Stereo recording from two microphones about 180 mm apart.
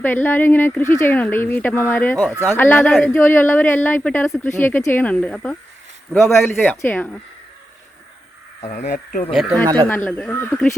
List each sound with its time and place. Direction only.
0.0 s a man's voice: 10° left (ahead or behind)
8.6 s speech: 40° left (ahead or behind)
9.3 s a man's voice: centre (ahead or behind)